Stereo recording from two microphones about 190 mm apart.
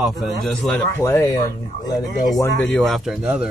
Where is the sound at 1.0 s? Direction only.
10° left (ahead or behind).